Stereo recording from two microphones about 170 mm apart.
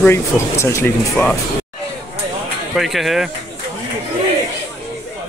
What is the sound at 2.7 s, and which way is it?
Speech, centre (ahead or behind).